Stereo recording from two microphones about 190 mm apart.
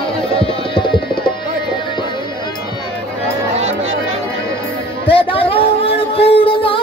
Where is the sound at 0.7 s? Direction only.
25° left (ahead or behind).